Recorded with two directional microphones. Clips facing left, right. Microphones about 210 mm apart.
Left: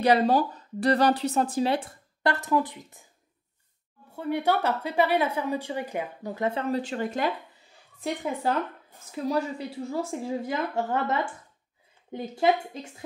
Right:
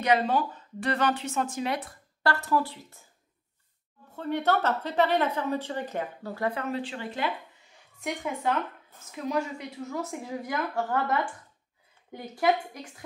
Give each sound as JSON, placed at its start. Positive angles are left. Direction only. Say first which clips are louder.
{"t": 0.0, "sound": "speech", "louder": "left 4 dB", "side_deg": 35}
{"t": 4.1, "sound": "a woman's voice", "louder": "left 1 dB", "side_deg": 10}
{"t": 6.7, "sound": "speech", "louder": "left 5 dB", "side_deg": 45}
{"t": 8.0, "sound": "a woman's voice", "louder": "left 2 dB", "side_deg": 35}